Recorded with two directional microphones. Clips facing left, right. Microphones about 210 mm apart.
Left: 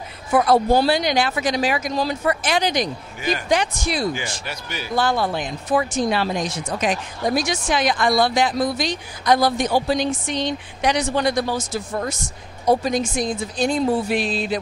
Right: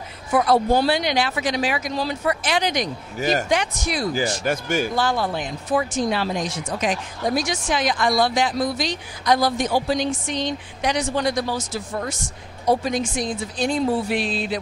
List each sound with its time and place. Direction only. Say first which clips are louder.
0.5 s speech: left 2 dB; 40° left (ahead or behind)
2.6 s speech: left 2 dB; 30° left (ahead or behind)
3.2 s a man's voice: right 3 dB; 45° right (ahead or behind)
3.4 s speech: left 2 dB; 35° left (ahead or behind)
4.5 s a man's voice: right 9 dB; 50° right (ahead or behind)
4.9 s speech: left 2 dB; 60° left (ahead or behind); by 14.6 s 40° left (ahead or behind)